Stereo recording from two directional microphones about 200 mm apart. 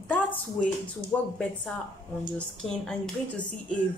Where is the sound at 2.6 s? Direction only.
Centre (ahead or behind).